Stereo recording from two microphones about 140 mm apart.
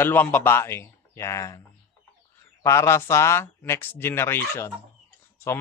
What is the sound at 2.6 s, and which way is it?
Speech, 20° left (ahead or behind).